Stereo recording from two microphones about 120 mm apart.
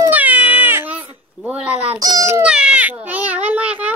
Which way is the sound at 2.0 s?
30° right (ahead or behind).